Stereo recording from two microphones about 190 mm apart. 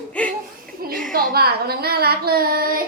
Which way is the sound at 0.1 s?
5° left (ahead or behind).